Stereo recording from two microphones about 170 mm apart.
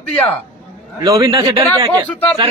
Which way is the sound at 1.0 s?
20° right (ahead or behind).